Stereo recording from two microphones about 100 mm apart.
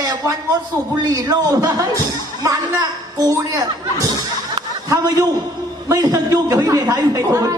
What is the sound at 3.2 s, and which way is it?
Speech, 35° right (ahead or behind).